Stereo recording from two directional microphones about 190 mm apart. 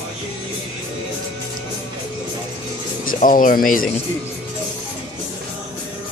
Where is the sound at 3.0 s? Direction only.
45° left (ahead or behind).